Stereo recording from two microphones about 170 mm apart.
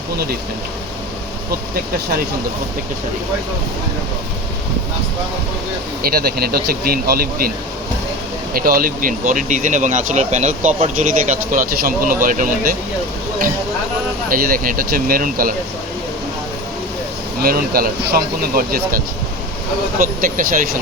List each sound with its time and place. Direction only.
6.0 s speech: 60° right (ahead or behind)
8.5 s speech: 60° right (ahead or behind)
14.3 s speech: 55° right (ahead or behind)
17.4 s speech: 60° right (ahead or behind)